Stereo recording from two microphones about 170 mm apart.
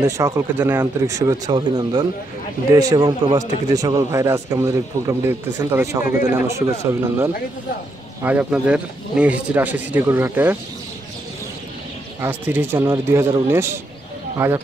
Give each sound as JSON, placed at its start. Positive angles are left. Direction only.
{"t": 0.0, "sound": "speech", "side_deg": -15}
{"t": 12.2, "sound": "speech", "side_deg": -10}